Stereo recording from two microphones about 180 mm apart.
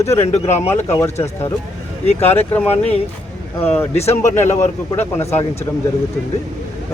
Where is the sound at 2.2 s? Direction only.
10° left (ahead or behind).